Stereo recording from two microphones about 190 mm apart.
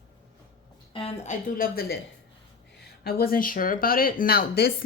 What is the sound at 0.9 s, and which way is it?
A woman's voice, 30° left (ahead or behind).